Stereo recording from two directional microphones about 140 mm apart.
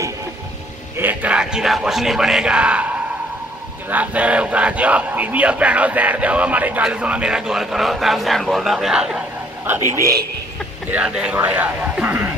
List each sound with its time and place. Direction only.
0.9 s a sound: 10° right (ahead or behind)
3.9 s speech: 10° right (ahead or behind)
9.8 s a man's voice: 20° right (ahead or behind)
10.9 s speech: 5° right (ahead or behind)